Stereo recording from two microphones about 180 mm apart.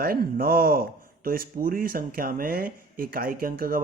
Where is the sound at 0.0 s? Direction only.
55° right (ahead or behind).